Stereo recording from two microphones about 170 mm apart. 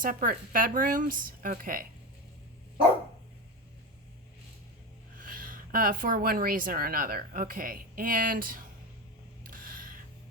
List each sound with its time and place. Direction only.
0.0 s speech: 55° right (ahead or behind)
5.1 s speech: 55° right (ahead or behind)
9.5 s a sound: 55° right (ahead or behind)